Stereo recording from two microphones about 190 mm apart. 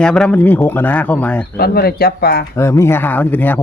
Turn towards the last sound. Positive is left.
turn(degrees=10)  # may be behind; listen again after turning